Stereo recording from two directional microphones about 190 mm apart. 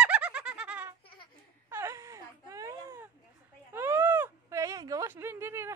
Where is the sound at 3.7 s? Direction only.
10° right (ahead or behind).